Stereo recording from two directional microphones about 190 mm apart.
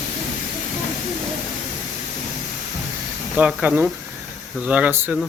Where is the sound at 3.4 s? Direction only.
10° right (ahead or behind).